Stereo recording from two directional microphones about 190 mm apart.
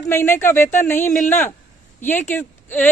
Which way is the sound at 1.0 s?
40° left (ahead or behind).